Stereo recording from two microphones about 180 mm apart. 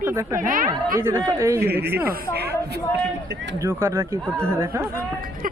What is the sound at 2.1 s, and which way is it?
Speech, 65° right (ahead or behind).